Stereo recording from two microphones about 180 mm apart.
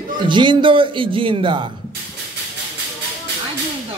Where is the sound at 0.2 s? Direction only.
25° right (ahead or behind).